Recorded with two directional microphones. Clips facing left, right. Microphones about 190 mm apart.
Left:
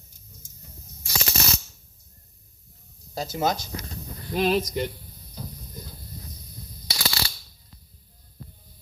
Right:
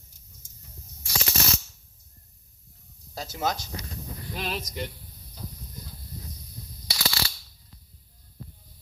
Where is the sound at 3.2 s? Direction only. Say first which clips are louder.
Left 4 dB; 20° left (ahead or behind).